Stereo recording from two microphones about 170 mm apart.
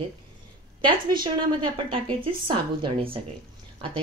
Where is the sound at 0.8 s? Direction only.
30° right (ahead or behind).